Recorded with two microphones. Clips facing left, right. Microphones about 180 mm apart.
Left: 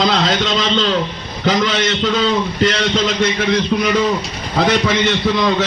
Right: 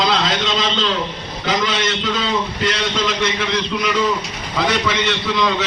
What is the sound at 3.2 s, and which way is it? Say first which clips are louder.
A man's voice: left 4 dB; 45° left (ahead or behind).